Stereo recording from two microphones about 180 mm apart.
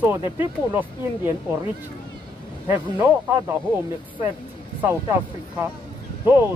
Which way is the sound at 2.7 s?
15° right (ahead or behind).